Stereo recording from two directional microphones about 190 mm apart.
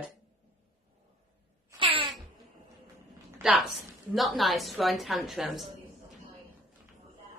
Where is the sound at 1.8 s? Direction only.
25° right (ahead or behind).